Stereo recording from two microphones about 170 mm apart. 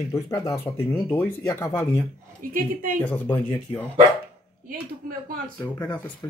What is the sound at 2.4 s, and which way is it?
Speech, 55° right (ahead or behind).